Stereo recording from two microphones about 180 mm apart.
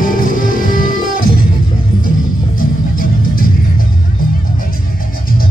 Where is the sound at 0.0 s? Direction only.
50° left (ahead or behind).